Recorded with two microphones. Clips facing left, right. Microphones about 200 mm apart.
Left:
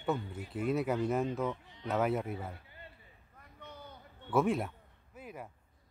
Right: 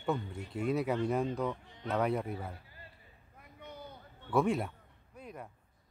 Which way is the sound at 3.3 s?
10° right (ahead or behind).